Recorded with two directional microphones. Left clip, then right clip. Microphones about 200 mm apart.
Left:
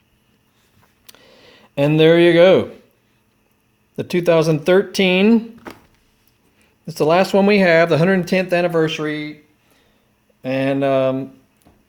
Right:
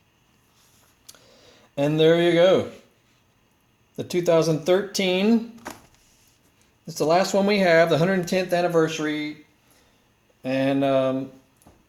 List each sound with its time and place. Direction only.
1.0 s a sound: 40° left (ahead or behind)
3.9 s speech: 35° left (ahead or behind)
6.8 s speech: 35° left (ahead or behind)
10.4 s speech: 35° left (ahead or behind)